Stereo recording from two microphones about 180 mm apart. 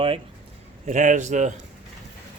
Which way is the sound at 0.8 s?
45° right (ahead or behind).